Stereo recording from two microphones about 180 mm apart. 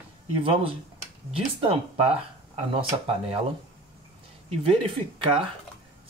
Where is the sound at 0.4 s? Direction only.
30° right (ahead or behind).